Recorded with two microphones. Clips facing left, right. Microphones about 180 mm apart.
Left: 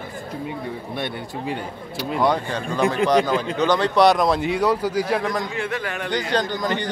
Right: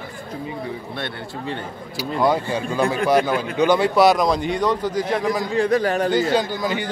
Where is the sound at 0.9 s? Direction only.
10° left (ahead or behind).